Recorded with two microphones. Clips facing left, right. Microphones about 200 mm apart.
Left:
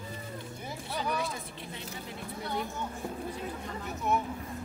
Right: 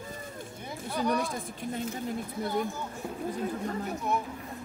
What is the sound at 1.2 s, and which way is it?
Speech, 45° right (ahead or behind).